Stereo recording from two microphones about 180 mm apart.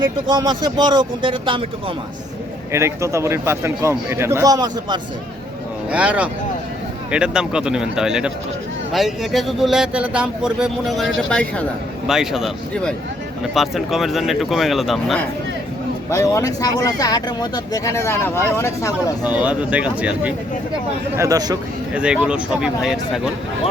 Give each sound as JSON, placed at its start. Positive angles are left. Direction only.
{"t": 0.0, "sound": "speech", "side_deg": -25}
{"t": 2.7, "sound": "a man's voice", "side_deg": -15}
{"t": 5.9, "sound": "a man's voice", "side_deg": -5}
{"t": 16.0, "sound": "speech", "side_deg": 15}
{"t": 19.2, "sound": "a man's voice", "side_deg": -10}
{"t": 21.2, "sound": "speech", "side_deg": -20}
{"t": 21.9, "sound": "speech", "side_deg": -5}